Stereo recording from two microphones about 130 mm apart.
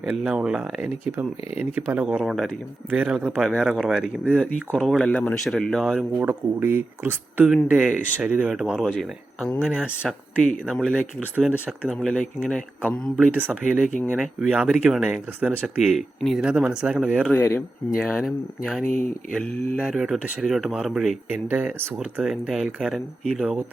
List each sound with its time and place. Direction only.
0.0 s speech: 5° right (ahead or behind)
2.9 s speech: 10° right (ahead or behind)
6.2 s speech: 15° right (ahead or behind); by 11.0 s 5° left (ahead or behind)
12.0 s speech: 5° left (ahead or behind)
13.1 s speech: 10° right (ahead or behind)
17.3 s speech: 20° left (ahead or behind)
17.9 s speech: centre (ahead or behind)
21.5 s speech: 15° right (ahead or behind)
22.2 s speech: 5° right (ahead or behind)